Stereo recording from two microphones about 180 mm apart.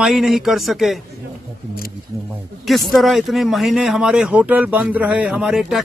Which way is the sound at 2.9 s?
Centre (ahead or behind).